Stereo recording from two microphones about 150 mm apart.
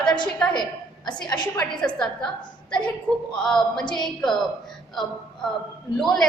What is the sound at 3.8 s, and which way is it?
Speech, 30° left (ahead or behind).